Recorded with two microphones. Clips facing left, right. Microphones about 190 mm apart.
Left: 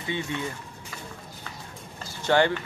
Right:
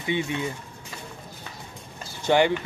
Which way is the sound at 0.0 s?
20° right (ahead or behind).